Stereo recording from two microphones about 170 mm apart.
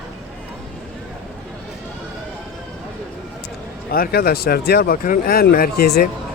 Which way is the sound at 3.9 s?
65° left (ahead or behind).